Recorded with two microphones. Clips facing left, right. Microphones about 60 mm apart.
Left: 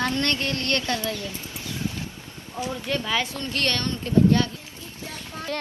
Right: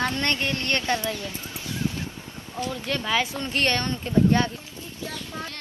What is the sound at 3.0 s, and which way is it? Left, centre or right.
Speech, centre.